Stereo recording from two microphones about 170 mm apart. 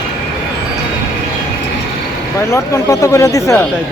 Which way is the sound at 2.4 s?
15° left (ahead or behind).